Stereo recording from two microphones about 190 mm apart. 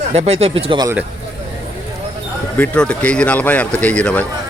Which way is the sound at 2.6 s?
5° left (ahead or behind).